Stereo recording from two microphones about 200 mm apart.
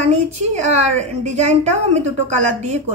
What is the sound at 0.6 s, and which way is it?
A woman's voice, 35° right (ahead or behind).